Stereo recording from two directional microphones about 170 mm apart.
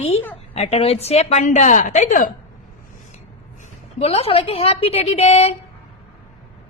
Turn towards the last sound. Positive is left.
turn(degrees=40)  # may be behind; listen again after turning